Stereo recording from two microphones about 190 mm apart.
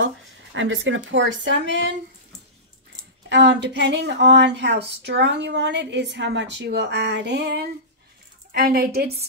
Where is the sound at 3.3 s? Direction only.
65° right (ahead or behind).